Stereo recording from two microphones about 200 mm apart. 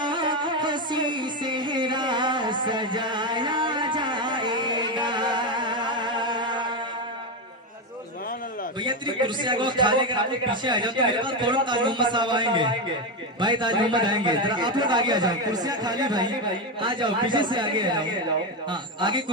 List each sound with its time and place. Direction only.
0.0 s music: 25° right (ahead or behind)
8.8 s a man's voice: 25° right (ahead or behind)